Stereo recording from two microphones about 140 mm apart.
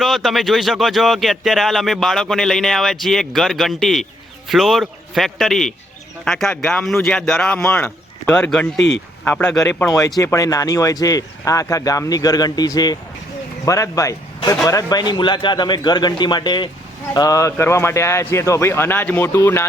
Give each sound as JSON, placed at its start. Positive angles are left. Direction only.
{"t": 0.0, "sound": "speech", "side_deg": 0}
{"t": 10.2, "sound": "a man's voice", "side_deg": 25}